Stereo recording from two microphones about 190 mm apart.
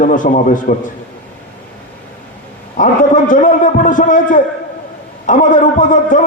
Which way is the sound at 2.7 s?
45° left (ahead or behind).